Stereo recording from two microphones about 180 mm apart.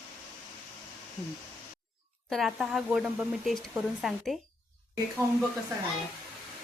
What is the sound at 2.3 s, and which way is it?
Speech, centre (ahead or behind).